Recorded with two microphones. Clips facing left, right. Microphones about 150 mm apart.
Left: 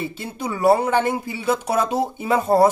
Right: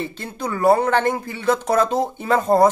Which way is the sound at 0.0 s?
10° left (ahead or behind).